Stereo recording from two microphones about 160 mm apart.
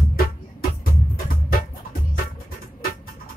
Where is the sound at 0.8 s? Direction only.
65° left (ahead or behind).